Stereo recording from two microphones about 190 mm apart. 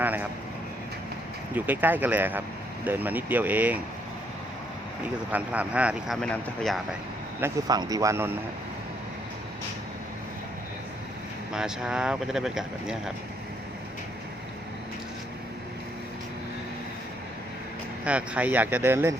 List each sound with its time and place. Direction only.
0.0 s vehicle: 10° right (ahead or behind)
1.5 s speech: 10° right (ahead or behind)
5.3 s speech: 5° right (ahead or behind)
7.4 s speech: 20° right (ahead or behind)
11.5 s speech: 5° right (ahead or behind)
18.0 s speech: 5° right (ahead or behind)